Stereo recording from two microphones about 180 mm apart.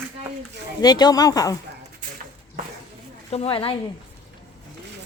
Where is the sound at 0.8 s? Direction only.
20° left (ahead or behind).